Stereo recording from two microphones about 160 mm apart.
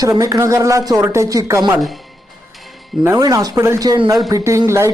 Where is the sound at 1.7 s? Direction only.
Centre (ahead or behind).